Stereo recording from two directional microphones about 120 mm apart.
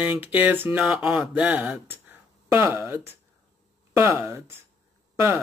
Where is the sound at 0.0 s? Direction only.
10° right (ahead or behind).